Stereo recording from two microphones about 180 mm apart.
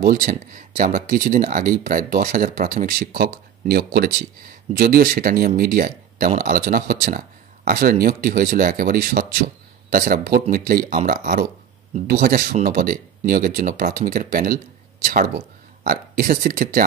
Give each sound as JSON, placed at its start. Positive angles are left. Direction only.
{"t": 0.0, "sound": "speech", "side_deg": -55}